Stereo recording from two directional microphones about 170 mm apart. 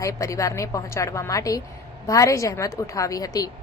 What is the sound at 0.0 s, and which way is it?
A woman's voice, 20° left (ahead or behind).